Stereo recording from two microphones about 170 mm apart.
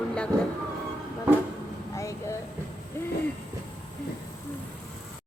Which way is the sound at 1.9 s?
20° left (ahead or behind).